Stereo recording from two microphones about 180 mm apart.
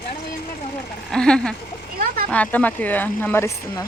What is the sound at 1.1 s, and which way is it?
A woman's voice, 5° left (ahead or behind).